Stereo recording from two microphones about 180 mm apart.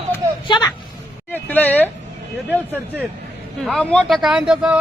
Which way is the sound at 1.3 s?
10° left (ahead or behind).